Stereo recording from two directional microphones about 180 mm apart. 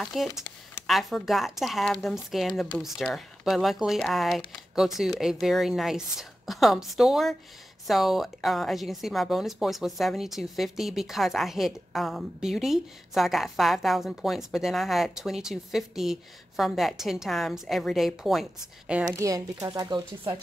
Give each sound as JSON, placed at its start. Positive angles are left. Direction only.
{"t": 0.0, "sound": "a woman's voice", "side_deg": 0}
{"t": 19.0, "sound": "speech", "side_deg": -20}